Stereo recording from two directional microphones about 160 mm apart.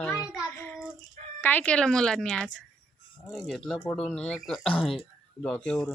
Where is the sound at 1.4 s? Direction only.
10° left (ahead or behind).